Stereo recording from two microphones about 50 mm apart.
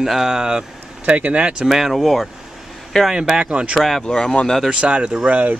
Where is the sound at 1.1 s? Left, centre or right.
Right.